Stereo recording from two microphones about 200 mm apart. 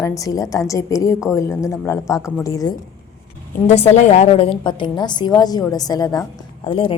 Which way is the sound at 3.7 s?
35° left (ahead or behind).